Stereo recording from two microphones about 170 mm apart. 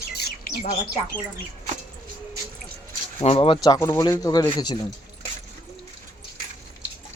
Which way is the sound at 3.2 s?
35° left (ahead or behind).